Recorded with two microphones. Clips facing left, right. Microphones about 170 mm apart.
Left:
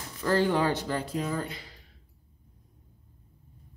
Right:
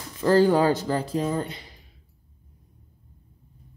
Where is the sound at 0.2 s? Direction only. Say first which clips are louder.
Right 7 dB; 35° right (ahead or behind).